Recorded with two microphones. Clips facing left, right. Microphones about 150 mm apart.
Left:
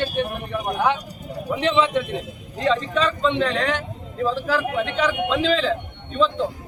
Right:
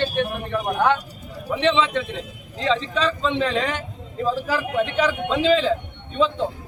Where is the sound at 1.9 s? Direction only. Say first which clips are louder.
Left 2 dB; 90° right.